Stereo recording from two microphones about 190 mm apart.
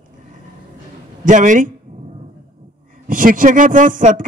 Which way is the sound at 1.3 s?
40° right (ahead or behind).